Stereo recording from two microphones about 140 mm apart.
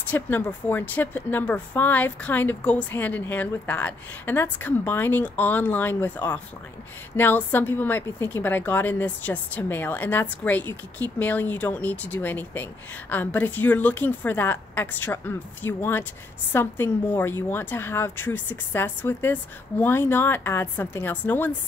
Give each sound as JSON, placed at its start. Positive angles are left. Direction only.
{"t": 0.1, "sound": "a woman's voice", "side_deg": 15}